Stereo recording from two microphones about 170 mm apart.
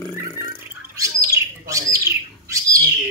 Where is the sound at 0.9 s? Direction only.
20° right (ahead or behind).